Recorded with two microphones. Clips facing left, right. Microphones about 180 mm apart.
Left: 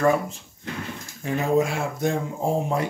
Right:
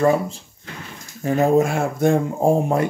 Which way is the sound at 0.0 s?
30° right (ahead or behind).